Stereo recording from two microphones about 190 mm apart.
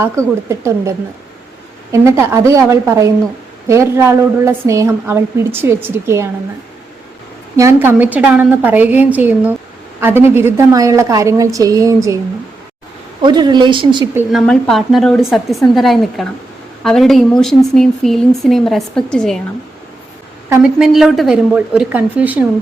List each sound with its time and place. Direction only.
0.0 s a woman's voice: 15° right (ahead or behind)
7.5 s a woman's voice: 15° right (ahead or behind)
13.2 s a woman's voice: 20° right (ahead or behind)
14.3 s speech: centre (ahead or behind)
20.5 s speech: 5° right (ahead or behind)